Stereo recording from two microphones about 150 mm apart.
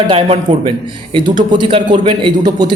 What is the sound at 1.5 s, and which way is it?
A man's voice, 30° right (ahead or behind).